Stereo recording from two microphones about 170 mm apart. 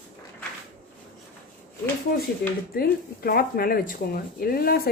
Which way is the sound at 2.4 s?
70° left (ahead or behind).